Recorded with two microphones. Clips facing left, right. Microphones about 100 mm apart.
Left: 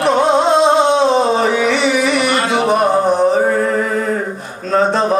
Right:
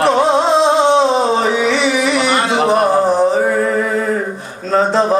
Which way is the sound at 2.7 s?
Centre (ahead or behind).